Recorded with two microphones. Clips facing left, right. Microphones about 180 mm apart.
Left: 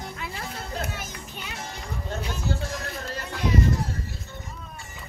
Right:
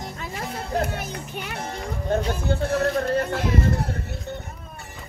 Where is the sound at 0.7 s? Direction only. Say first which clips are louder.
Right 10 dB; 60° right (ahead or behind).